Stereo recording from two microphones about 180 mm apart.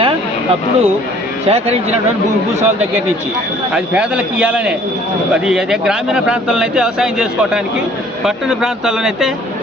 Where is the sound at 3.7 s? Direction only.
5° right (ahead or behind).